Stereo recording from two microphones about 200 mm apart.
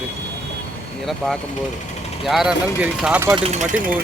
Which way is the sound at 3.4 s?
35° right (ahead or behind).